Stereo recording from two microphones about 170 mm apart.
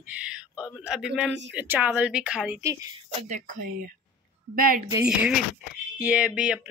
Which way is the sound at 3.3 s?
50° right (ahead or behind).